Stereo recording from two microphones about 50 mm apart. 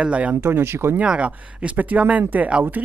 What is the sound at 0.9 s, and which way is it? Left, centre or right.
Speech, right.